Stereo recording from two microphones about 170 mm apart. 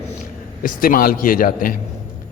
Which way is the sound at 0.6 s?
55° left (ahead or behind).